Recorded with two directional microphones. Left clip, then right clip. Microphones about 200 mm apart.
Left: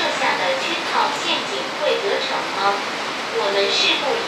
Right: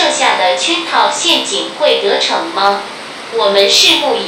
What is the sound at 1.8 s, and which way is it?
A woman's voice, 45° right (ahead or behind).